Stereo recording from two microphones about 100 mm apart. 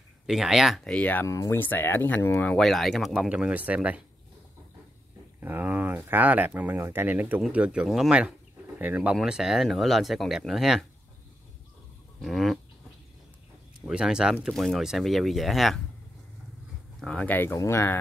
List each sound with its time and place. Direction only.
0.3 s speech: 5° right (ahead or behind)
0.9 s speech: 15° left (ahead or behind)
1.2 s speech: 30° left (ahead or behind)
2.4 s speech: 5° left (ahead or behind)
3.3 s speech: 10° right (ahead or behind)
5.4 s speech: 20° right (ahead or behind)
9.1 s speech: 5° right (ahead or behind)
12.2 s speech: centre (ahead or behind)
13.8 s speech: 5° right (ahead or behind)
17.0 s speech: 10° left (ahead or behind)